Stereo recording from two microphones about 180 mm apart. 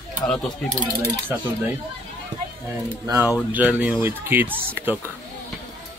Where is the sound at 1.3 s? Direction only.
10° right (ahead or behind).